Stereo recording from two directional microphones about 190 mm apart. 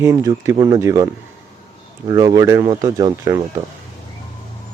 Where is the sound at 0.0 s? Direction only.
15° right (ahead or behind).